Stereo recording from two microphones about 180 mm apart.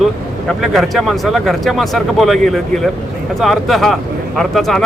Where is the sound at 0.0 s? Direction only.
Centre (ahead or behind).